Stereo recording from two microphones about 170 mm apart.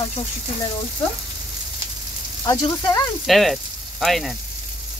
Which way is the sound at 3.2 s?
Centre (ahead or behind).